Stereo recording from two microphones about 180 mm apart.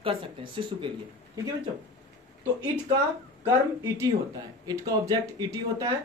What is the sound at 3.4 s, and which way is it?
Speech, 15° right (ahead or behind).